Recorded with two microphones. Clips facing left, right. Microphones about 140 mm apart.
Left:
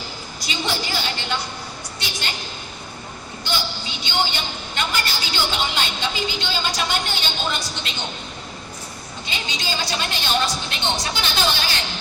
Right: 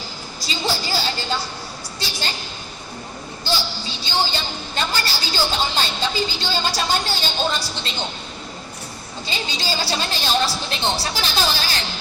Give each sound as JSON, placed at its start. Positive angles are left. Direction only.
{"t": 0.4, "sound": "a sound", "side_deg": -35}
{"t": 3.4, "sound": "a woman's voice", "side_deg": -35}
{"t": 9.2, "sound": "a woman's voice", "side_deg": -35}